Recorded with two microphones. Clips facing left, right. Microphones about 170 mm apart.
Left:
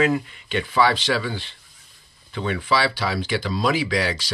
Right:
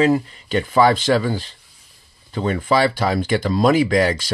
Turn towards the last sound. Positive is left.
turn(degrees=-45)  # may be behind; listen again after turning